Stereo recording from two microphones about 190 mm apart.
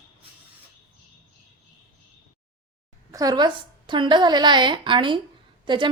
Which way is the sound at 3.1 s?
20° right (ahead or behind).